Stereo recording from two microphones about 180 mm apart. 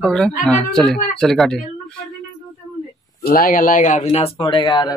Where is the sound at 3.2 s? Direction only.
55° left (ahead or behind); by 4.9 s 25° left (ahead or behind).